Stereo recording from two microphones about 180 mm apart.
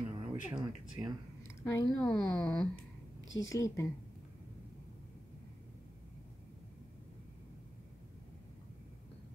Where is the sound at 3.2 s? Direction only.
90° left.